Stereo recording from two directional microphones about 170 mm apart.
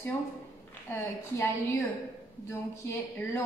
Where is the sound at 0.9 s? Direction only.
15° left (ahead or behind).